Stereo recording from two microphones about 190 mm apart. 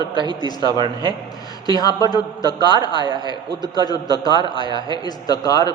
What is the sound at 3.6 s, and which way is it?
Speech, 20° left (ahead or behind).